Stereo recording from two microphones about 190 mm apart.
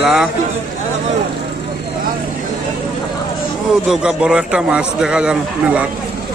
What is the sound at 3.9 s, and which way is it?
Speech, 5° right (ahead or behind).